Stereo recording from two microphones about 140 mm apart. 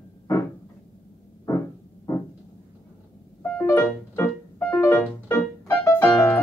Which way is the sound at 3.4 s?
15° left (ahead or behind).